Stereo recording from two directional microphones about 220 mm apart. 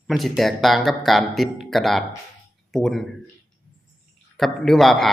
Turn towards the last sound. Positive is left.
turn(degrees=0)  # may be behind; listen again after turning